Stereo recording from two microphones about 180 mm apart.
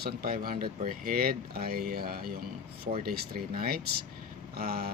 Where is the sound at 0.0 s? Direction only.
60° right (ahead or behind).